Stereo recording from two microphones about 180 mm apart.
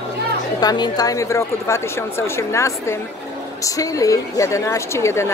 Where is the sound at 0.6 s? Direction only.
20° left (ahead or behind).